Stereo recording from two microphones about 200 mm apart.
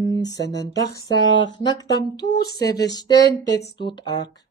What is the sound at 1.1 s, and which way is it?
Speech, 65° left (ahead or behind).